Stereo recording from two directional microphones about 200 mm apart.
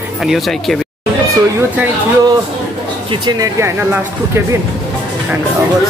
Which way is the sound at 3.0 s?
20° right (ahead or behind).